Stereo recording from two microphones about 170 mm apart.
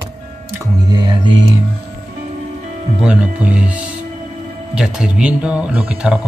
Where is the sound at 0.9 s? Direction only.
25° right (ahead or behind).